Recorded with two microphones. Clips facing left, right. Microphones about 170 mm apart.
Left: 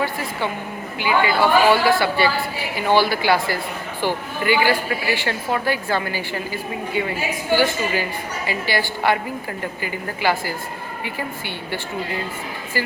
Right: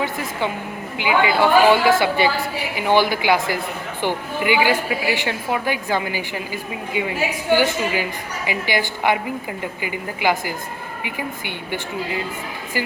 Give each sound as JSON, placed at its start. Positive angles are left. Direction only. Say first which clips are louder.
{"t": 0.0, "sound": "a woman's voice", "louder": "even", "side_deg": -15}